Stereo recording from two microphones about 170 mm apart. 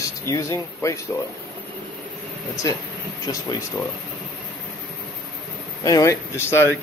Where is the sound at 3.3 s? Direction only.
20° left (ahead or behind).